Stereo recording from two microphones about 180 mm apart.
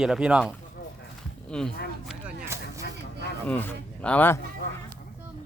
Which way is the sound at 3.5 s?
5° left (ahead or behind).